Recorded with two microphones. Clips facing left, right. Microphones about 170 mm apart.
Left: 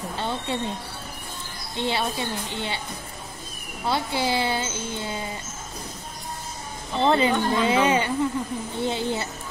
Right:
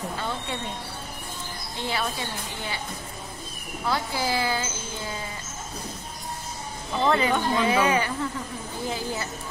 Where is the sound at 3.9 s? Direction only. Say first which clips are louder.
Left 2 dB; 25° left (ahead or behind).